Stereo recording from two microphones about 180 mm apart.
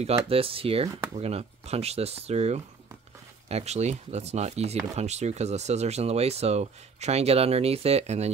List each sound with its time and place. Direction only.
0.0 s speech: 30° right (ahead or behind)